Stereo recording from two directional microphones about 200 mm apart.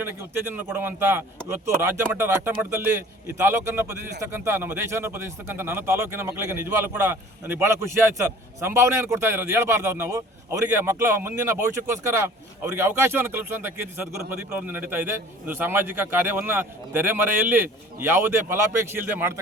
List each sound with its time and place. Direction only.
0.0 s a man's voice: 10° right (ahead or behind)